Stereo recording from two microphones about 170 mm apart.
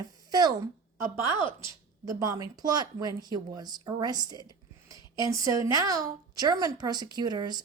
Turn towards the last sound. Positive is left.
turn(degrees=-25)  # may be behind; listen again after turning